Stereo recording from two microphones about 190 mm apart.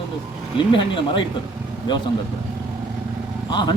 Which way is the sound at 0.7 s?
25° left (ahead or behind).